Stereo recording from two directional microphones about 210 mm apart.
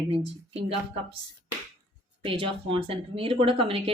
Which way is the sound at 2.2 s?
25° right (ahead or behind).